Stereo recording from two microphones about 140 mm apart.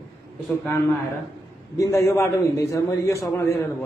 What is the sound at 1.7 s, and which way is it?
A man's voice, 20° left (ahead or behind).